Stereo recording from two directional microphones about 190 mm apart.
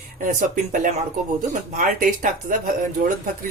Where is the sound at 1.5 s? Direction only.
45° right (ahead or behind).